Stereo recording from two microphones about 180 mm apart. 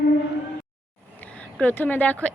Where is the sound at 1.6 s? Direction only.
10° left (ahead or behind).